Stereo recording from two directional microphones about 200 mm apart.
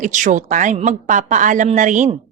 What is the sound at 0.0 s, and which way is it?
A woman's voice, 40° right (ahead or behind).